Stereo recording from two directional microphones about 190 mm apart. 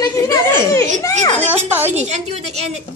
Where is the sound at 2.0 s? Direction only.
35° right (ahead or behind).